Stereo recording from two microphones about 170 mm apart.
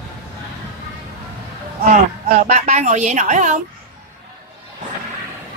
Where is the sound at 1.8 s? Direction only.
40° right (ahead or behind).